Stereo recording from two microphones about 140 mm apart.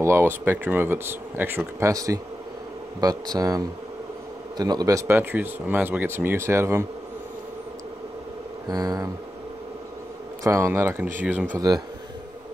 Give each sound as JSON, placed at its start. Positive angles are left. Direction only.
{"t": 0.0, "sound": "speech", "side_deg": -20}
{"t": 5.0, "sound": "speech", "side_deg": -15}
{"t": 8.6, "sound": "speech", "side_deg": -25}
{"t": 10.4, "sound": "speech", "side_deg": -20}
{"t": 11.5, "sound": "speech", "side_deg": -25}